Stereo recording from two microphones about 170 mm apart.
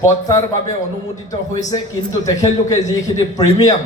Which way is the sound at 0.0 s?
20° left (ahead or behind).